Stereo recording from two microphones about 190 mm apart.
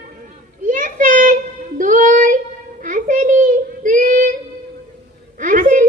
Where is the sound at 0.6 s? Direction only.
45° right (ahead or behind).